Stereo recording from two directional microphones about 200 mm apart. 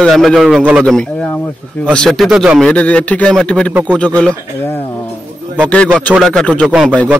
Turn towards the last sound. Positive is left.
turn(degrees=-5)  # may be behind; listen again after turning